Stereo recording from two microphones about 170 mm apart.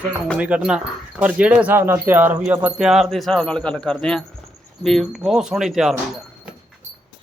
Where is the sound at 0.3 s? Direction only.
5° right (ahead or behind).